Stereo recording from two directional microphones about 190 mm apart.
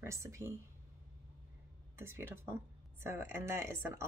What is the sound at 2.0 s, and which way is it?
Speech, 10° right (ahead or behind).